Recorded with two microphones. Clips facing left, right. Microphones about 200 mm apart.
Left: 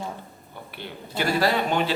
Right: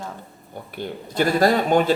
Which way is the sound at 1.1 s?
45° right (ahead or behind).